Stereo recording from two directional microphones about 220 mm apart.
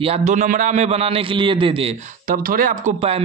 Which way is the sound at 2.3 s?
40° right (ahead or behind).